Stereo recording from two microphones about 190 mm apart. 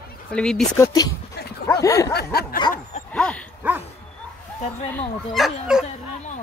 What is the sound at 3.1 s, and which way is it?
Speech, 5° left (ahead or behind).